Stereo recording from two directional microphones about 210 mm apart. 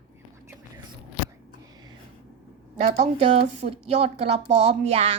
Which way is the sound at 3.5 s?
30° right (ahead or behind).